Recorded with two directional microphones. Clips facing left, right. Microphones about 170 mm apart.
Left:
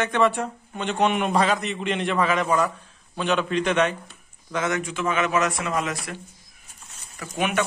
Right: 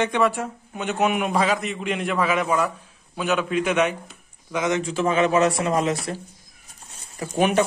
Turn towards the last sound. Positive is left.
turn(degrees=-30)  # may be behind; listen again after turning